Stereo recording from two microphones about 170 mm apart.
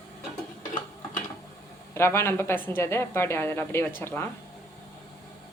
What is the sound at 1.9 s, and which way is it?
A woman's voice, 15° left (ahead or behind).